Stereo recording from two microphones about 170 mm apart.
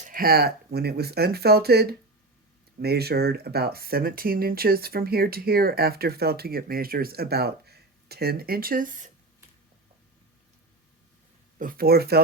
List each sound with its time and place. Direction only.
0.0 s speech: 55° right (ahead or behind)
11.6 s speech: 60° right (ahead or behind)